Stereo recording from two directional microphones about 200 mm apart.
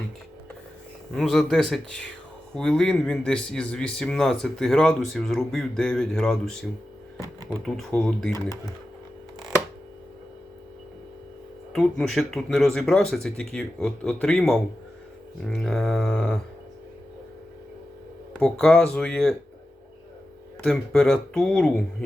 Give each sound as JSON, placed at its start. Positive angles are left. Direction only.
{"t": 1.1, "sound": "speech", "side_deg": 0}
{"t": 8.3, "sound": "speech", "side_deg": 15}
{"t": 11.7, "sound": "speech", "side_deg": 0}
{"t": 18.3, "sound": "speech", "side_deg": 5}
{"t": 20.6, "sound": "speech", "side_deg": 5}